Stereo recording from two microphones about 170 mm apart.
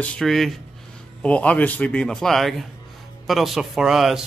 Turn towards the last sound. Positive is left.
turn(degrees=0)  # may be behind; listen again after turning